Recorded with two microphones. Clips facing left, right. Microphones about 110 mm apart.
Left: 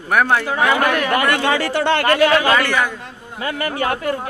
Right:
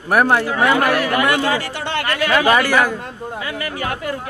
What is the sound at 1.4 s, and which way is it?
Speech, 65° left (ahead or behind).